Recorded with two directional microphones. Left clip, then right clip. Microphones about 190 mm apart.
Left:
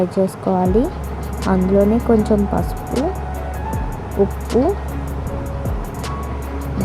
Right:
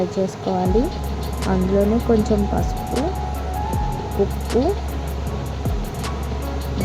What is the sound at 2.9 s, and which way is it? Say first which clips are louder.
Speech: left 3 dB; centre (ahead or behind).